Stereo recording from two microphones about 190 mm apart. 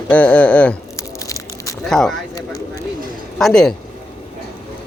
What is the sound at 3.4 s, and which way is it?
Speech, 5° left (ahead or behind).